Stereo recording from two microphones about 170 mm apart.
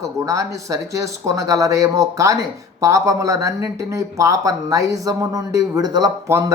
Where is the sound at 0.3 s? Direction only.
20° right (ahead or behind).